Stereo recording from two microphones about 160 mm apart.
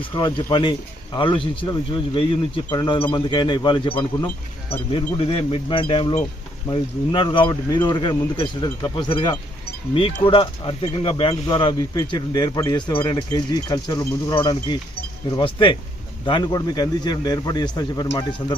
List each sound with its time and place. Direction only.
0.0 s speech: 30° left (ahead or behind)